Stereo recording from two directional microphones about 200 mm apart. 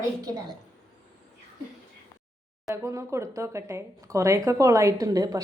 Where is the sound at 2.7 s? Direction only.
15° right (ahead or behind).